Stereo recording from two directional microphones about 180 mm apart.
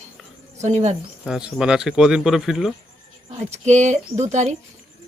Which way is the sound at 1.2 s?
5° right (ahead or behind).